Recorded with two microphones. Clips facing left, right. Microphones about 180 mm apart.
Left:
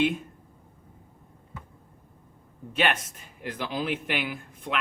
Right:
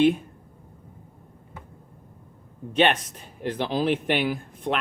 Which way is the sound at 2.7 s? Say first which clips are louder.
Right 5 dB; 30° right (ahead or behind).